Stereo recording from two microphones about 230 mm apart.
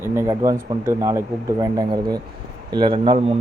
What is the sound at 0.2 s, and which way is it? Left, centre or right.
A man's voice, centre.